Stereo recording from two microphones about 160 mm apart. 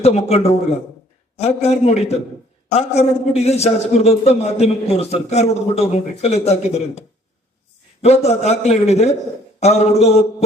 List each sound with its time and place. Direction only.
0.0 s a man's voice: 40° left (ahead or behind)
8.0 s a man's voice: 40° left (ahead or behind)